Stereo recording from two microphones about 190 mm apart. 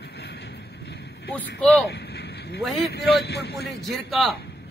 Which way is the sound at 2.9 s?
60° left (ahead or behind).